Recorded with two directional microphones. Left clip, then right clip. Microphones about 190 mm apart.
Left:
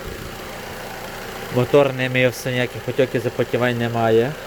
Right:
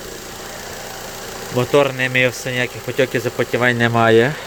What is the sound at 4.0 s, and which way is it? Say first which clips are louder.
Speech: right 3 dB; 15° right (ahead or behind).